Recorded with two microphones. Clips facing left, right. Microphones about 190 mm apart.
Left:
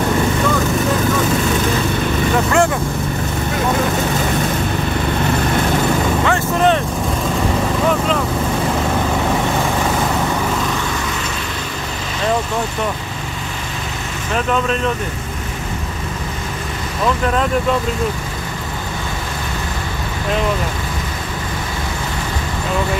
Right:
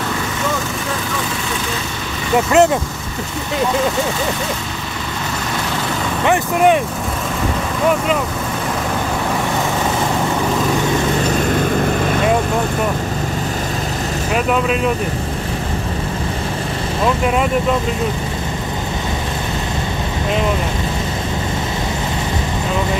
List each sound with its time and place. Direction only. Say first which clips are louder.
2.3 s speech: right 5 dB; 20° right (ahead or behind)
6.2 s vehicle: right 5 dB; 15° right (ahead or behind)
14.3 s speech: right 1 dB; 10° right (ahead or behind)